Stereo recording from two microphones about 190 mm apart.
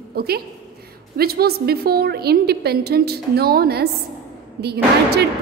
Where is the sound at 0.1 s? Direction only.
55° right (ahead or behind).